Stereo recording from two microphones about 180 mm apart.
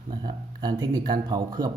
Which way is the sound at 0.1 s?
25° right (ahead or behind).